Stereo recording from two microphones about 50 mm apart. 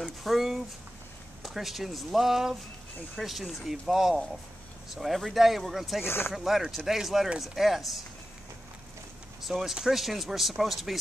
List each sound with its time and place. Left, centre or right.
0.2 s speech: centre
6.0 s speech: left
6.3 s speech: centre
9.4 s speech: centre